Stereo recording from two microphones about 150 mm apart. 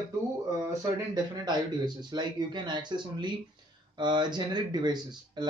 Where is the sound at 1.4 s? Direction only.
30° right (ahead or behind).